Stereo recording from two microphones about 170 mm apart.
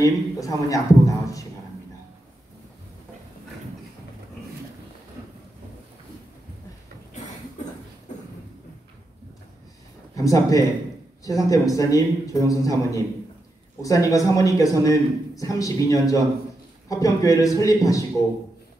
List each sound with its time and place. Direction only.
0.0 s a man's voice: 20° left (ahead or behind)
8.1 s a sound: 45° left (ahead or behind)
10.1 s a man's voice: 20° left (ahead or behind)